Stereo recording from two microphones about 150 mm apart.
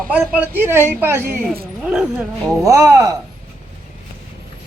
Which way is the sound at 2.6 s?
20° right (ahead or behind).